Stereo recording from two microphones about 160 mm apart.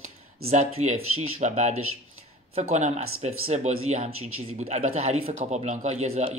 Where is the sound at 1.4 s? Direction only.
45° right (ahead or behind).